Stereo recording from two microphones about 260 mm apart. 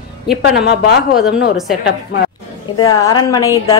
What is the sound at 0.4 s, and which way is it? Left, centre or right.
Speech, left.